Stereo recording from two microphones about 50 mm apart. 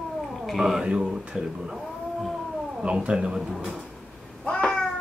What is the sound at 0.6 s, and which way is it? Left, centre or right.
Speech, centre.